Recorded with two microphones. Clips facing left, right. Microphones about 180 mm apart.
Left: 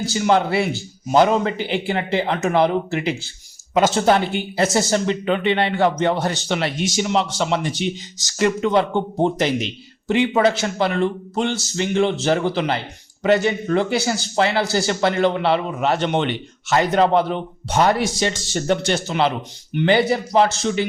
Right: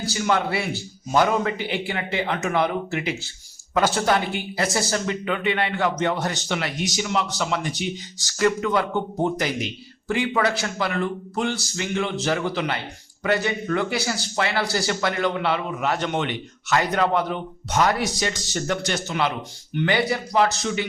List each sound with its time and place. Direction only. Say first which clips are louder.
0.0 s speech: left 5 dB; 25° left (ahead or behind)